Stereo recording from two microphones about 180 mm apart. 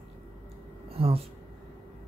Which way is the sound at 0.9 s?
30° right (ahead or behind).